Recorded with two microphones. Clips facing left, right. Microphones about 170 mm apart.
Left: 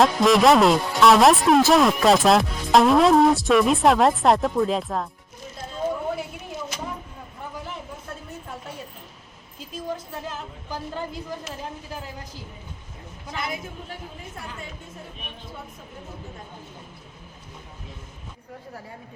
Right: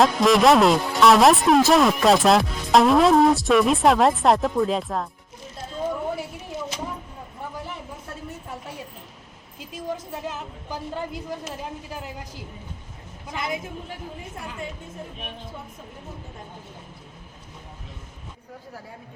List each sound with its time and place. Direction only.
0.0 s speech: centre (ahead or behind)
9.7 s a sound: 15° right (ahead or behind)
13.3 s a woman's voice: 20° right (ahead or behind)